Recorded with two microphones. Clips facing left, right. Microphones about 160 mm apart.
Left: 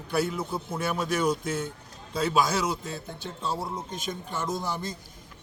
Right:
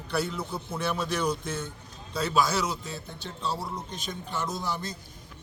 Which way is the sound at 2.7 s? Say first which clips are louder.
Left 3 dB; 50° left (ahead or behind).